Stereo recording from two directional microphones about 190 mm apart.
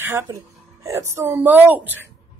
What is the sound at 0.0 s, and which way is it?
A woman's voice, 15° right (ahead or behind).